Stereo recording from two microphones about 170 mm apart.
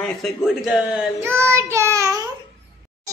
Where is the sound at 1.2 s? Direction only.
15° right (ahead or behind).